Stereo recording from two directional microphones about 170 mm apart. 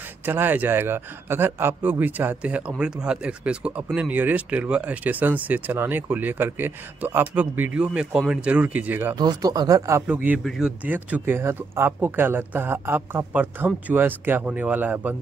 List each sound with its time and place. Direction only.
0.2 s speech: 10° right (ahead or behind)
9.1 s speech: 25° right (ahead or behind)